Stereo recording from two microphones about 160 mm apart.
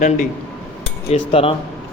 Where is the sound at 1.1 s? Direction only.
35° left (ahead or behind).